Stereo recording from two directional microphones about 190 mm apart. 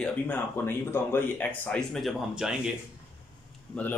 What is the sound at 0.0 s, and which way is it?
Speech, 10° left (ahead or behind).